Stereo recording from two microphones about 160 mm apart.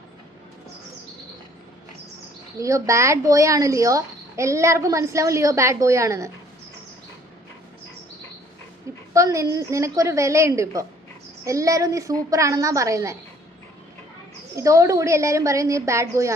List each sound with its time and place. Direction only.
2.6 s speech: 20° right (ahead or behind)
9.1 s speech: 20° right (ahead or behind)
14.5 s speech: 20° right (ahead or behind)